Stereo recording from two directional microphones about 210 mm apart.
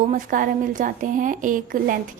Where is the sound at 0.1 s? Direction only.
40° right (ahead or behind).